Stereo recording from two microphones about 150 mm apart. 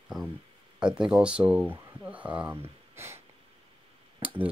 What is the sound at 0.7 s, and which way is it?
Speech, 5° right (ahead or behind).